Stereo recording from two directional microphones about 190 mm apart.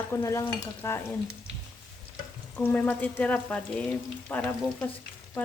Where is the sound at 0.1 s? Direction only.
15° left (ahead or behind).